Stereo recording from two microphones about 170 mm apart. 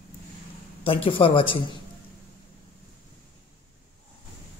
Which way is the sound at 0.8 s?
30° left (ahead or behind).